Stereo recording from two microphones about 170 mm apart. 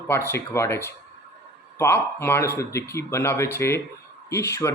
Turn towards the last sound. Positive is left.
turn(degrees=15)  # may be behind; listen again after turning